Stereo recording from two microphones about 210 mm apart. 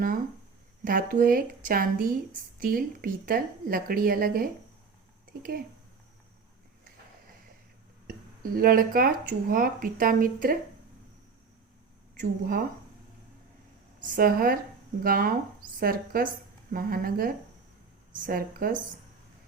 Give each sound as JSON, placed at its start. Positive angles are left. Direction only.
{"t": 0.9, "sound": "a woman's voice", "side_deg": -40}
{"t": 8.0, "sound": "speech", "side_deg": -45}
{"t": 12.2, "sound": "speech", "side_deg": -45}
{"t": 14.2, "sound": "a woman's voice", "side_deg": -45}